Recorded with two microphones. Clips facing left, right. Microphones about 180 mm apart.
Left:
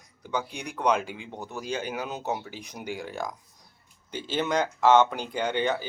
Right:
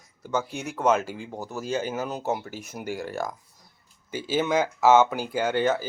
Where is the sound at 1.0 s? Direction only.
40° right (ahead or behind).